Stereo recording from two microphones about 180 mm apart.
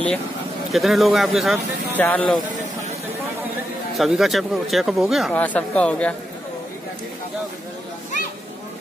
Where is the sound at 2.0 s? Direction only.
10° left (ahead or behind).